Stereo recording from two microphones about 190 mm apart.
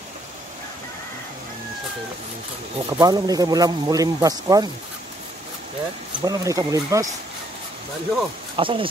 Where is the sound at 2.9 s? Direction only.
20° right (ahead or behind).